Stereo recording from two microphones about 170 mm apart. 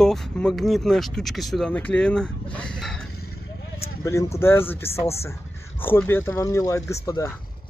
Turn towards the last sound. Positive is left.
turn(degrees=20)  # may be behind; listen again after turning